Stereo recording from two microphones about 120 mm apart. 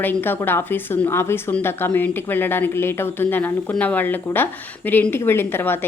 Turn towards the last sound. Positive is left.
turn(degrees=20)  # may be behind; listen again after turning